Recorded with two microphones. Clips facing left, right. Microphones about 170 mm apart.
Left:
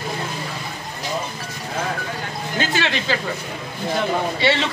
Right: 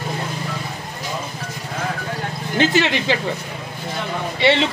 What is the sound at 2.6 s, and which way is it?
Speech, 20° right (ahead or behind).